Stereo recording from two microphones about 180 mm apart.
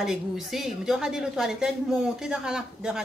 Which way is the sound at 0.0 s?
Centre (ahead or behind).